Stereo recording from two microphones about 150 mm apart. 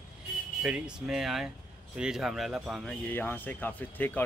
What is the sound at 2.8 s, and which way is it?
Speech, 10° left (ahead or behind).